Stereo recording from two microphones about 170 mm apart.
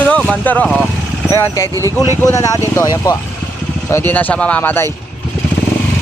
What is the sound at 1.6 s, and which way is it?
Speech, 20° left (ahead or behind).